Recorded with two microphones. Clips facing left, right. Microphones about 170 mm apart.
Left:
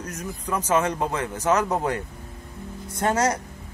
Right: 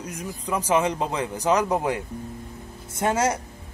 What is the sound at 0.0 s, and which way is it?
A man's voice, 10° right (ahead or behind).